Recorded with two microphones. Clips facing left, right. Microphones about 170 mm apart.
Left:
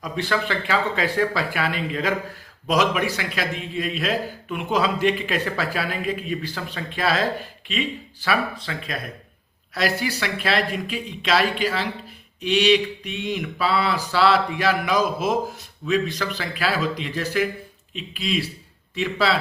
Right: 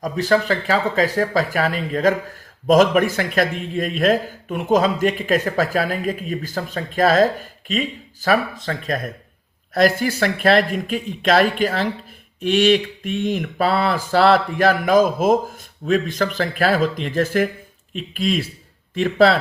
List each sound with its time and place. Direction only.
0.0 s a man's voice: 40° right (ahead or behind)